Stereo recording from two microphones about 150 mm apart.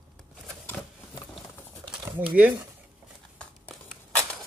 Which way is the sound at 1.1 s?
25° left (ahead or behind).